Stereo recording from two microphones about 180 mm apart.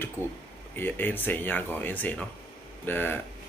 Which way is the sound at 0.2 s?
10° right (ahead or behind).